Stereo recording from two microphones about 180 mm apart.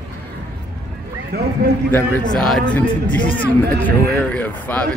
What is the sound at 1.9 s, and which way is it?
Speech, 10° left (ahead or behind).